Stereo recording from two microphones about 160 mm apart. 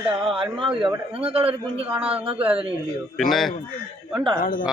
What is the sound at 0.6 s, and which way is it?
A man's voice, 30° right (ahead or behind).